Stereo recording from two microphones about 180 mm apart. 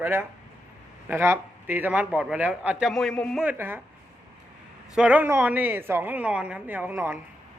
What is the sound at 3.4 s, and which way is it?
Speech, 10° right (ahead or behind).